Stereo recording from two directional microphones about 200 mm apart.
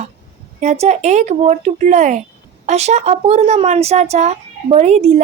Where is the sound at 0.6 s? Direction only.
35° right (ahead or behind).